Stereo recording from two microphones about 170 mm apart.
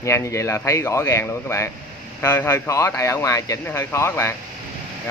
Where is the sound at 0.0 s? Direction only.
15° left (ahead or behind).